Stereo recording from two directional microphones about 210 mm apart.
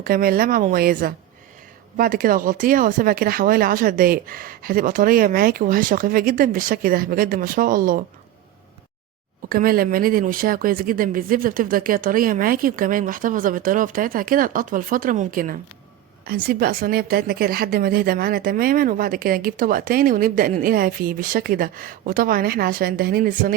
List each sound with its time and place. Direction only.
0.0 s a woman's voice: 45° right (ahead or behind)
9.5 s a woman's voice: 45° right (ahead or behind)